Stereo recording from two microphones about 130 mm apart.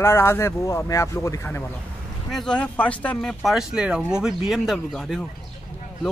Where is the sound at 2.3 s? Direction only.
5° left (ahead or behind).